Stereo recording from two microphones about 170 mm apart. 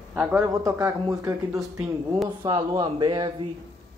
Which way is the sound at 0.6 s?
20° right (ahead or behind).